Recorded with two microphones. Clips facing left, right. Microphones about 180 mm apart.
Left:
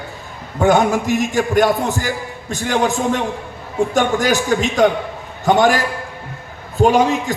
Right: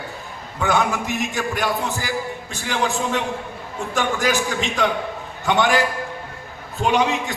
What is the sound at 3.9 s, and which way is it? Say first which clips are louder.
A man's voice: left 3 dB; 40° left (ahead or behind).